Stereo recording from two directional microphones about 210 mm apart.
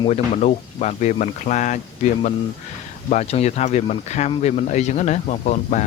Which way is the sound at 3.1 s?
30° left (ahead or behind).